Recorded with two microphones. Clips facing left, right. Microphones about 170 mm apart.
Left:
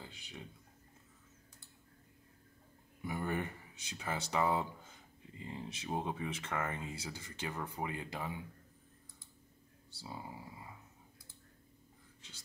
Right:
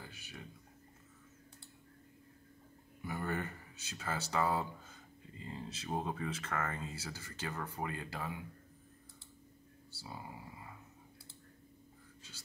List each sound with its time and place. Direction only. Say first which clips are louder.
0.0 s speech: left 1 dB; 20° left (ahead or behind)
3.1 s speech: left 1 dB; 15° left (ahead or behind)
9.9 s speech: left 1 dB; 20° left (ahead or behind)